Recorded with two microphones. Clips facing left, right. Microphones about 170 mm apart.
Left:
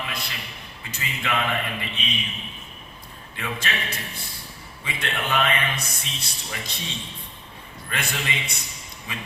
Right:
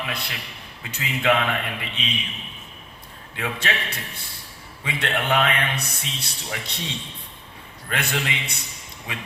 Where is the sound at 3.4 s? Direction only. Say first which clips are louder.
Right 3 dB; 65° right (ahead or behind).